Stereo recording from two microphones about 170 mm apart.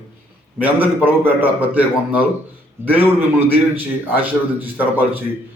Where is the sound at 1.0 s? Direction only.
10° right (ahead or behind).